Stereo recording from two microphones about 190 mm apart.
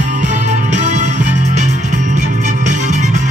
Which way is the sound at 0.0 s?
40° right (ahead or behind).